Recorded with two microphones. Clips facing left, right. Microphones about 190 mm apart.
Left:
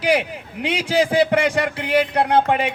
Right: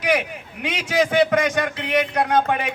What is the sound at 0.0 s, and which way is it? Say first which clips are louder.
A man's voice: left 2 dB; 30° left (ahead or behind).